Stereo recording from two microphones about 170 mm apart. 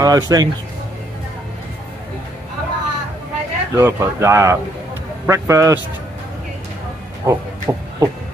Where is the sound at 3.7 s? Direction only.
15° right (ahead or behind).